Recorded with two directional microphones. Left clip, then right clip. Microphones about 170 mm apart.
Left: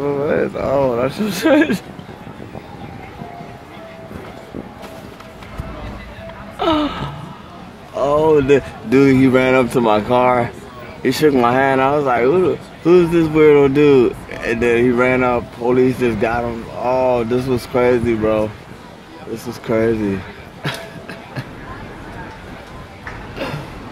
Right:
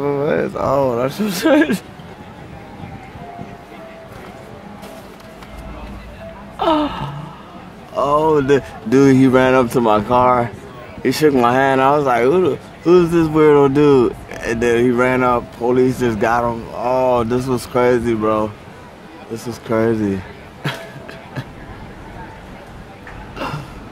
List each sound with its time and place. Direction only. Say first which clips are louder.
0.0 s speech: even; 15° right (ahead or behind)
6.6 s gasp: right 1 dB; 5° right (ahead or behind)
7.9 s speech: left 1 dB; 5° right (ahead or behind)
9.7 s speech: even; 5° right (ahead or behind); by 12.5 s 30° right (ahead or behind)
12.8 s speech: even; 10° right (ahead or behind)
20.6 s a sound: even; 20° right (ahead or behind)
23.3 s a sound: right 1 dB; 10° right (ahead or behind)